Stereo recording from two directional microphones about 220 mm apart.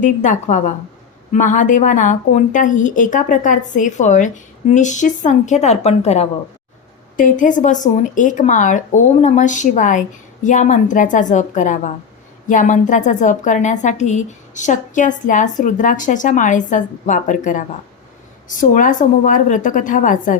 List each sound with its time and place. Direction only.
0.0 s a woman's voice: 35° left (ahead or behind)